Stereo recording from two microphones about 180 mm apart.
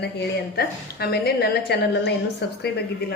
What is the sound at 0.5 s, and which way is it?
A woman's voice, 60° left (ahead or behind).